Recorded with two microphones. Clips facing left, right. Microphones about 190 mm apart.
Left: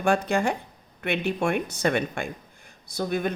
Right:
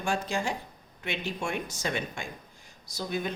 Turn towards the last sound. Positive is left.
turn(degrees=55)  # may be behind; listen again after turning